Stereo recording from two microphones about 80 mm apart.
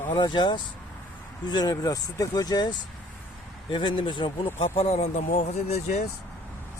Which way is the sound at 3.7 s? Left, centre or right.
Left.